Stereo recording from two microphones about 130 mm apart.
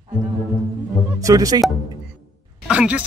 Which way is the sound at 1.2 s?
25° right (ahead or behind).